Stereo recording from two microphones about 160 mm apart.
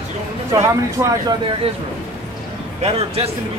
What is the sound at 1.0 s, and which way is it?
Speech, 20° right (ahead or behind).